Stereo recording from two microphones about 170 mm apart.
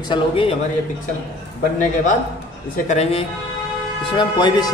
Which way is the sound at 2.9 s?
40° left (ahead or behind).